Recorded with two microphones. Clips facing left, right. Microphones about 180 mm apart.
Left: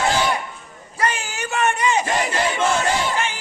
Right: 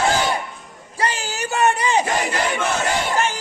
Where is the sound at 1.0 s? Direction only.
35° right (ahead or behind).